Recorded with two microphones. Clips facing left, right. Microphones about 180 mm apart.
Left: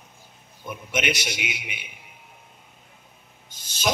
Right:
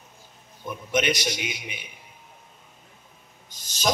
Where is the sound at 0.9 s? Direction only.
40° right (ahead or behind).